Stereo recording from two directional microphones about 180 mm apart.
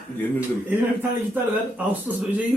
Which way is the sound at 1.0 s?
10° right (ahead or behind).